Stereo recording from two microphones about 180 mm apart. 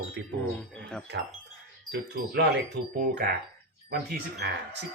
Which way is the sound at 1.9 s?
60° right (ahead or behind).